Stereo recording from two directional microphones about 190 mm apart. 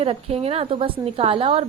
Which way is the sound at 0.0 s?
30° right (ahead or behind).